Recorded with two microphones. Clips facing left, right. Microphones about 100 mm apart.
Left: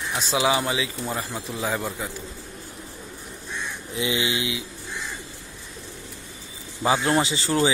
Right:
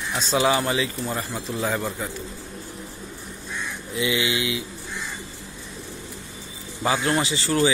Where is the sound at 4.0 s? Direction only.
25° left (ahead or behind).